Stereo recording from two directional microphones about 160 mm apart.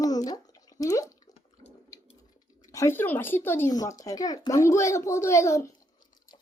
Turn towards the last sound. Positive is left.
turn(degrees=20)  # may be behind; listen again after turning